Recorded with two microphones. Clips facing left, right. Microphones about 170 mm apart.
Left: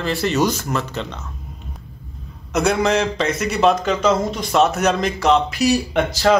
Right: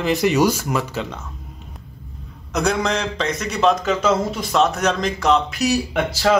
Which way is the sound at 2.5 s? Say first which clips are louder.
Left 3 dB; centre (ahead or behind).